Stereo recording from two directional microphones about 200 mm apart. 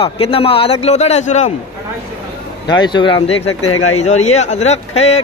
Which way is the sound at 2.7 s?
20° left (ahead or behind).